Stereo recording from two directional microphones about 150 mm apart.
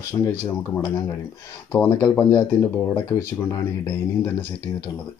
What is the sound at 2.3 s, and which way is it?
Speech, 30° left (ahead or behind).